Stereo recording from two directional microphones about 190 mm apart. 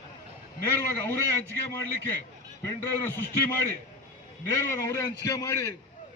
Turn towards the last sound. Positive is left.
turn(degrees=15)  # may be behind; listen again after turning